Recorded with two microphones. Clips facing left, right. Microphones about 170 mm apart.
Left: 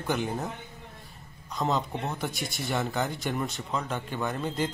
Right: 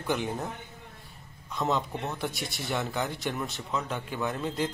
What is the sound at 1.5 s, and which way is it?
A man's voice, centre (ahead or behind).